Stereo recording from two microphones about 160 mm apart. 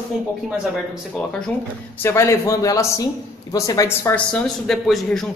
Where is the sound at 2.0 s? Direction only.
15° left (ahead or behind).